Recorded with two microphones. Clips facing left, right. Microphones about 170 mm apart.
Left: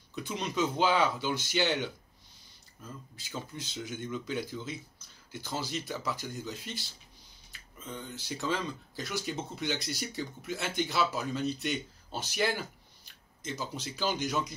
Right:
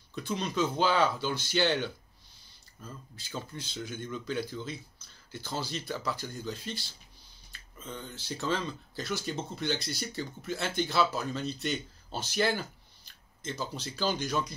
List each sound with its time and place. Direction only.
0.1 s speech: 20° left (ahead or behind)
3.3 s speech: 20° left (ahead or behind)
7.9 s speech: 15° left (ahead or behind)